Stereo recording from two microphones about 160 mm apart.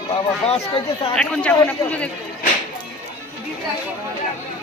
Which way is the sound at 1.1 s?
5° left (ahead or behind).